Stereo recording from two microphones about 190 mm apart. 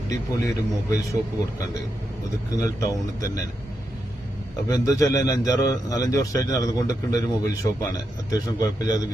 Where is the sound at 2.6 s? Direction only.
15° left (ahead or behind).